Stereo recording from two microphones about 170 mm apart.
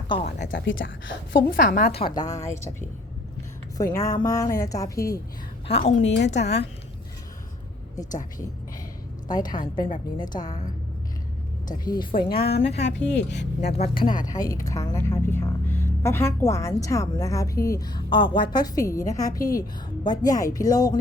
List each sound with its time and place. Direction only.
0.6 s a woman's voice: 90° left
1.5 s a woman's voice: 55° left (ahead or behind)
1.9 s speech: 30° left (ahead or behind); by 2.8 s 15° left (ahead or behind)
3.9 s speech: 20° left (ahead or behind)
5.6 s a woman's voice: 35° left (ahead or behind)
6.0 s a woman's voice: 90° left
9.2 s speech: 25° left (ahead or behind)
11.7 s speech: 25° left (ahead or behind)
12.3 s a woman's voice: 65° left (ahead or behind)
13.1 s a woman's voice: 90° left
13.7 s speech: 60° left (ahead or behind)
14.2 s speech: 20° left (ahead or behind)